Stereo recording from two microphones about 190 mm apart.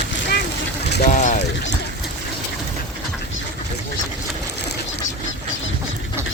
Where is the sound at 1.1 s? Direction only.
40° left (ahead or behind).